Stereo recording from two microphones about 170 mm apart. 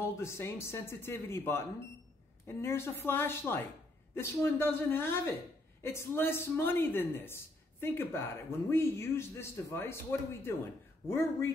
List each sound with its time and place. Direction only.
0.0 s speech: 15° left (ahead or behind)